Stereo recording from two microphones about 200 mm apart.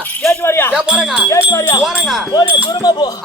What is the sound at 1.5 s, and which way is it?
Speech, 15° left (ahead or behind).